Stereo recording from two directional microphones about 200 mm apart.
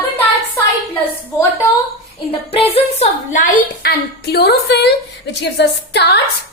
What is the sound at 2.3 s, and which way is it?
A woman's voice, 30° left (ahead or behind).